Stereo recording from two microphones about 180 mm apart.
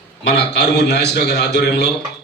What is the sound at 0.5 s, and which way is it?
A man's voice, 70° left (ahead or behind).